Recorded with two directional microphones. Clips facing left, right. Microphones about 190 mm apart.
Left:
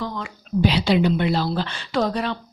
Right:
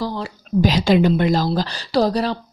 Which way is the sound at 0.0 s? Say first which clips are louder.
Right 4 dB; 35° right (ahead or behind).